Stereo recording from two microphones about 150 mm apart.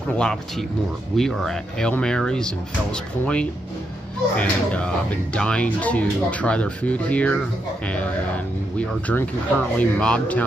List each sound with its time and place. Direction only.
0.2 s speech: 5° left (ahead or behind)